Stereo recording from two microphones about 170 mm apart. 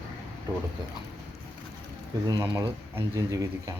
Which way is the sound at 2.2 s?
25° right (ahead or behind).